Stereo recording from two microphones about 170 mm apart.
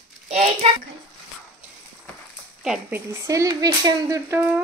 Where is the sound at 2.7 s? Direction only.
10° right (ahead or behind).